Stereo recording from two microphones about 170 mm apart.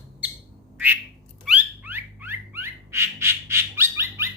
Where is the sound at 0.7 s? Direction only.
10° right (ahead or behind).